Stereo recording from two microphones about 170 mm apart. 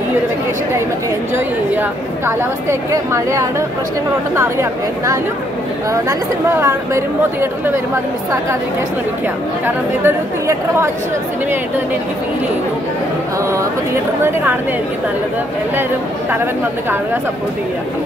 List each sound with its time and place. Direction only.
1.3 s a woman's voice: 15° right (ahead or behind)
10.0 s a woman's voice: 15° right (ahead or behind)